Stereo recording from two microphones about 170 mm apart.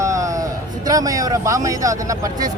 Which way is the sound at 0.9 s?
20° right (ahead or behind).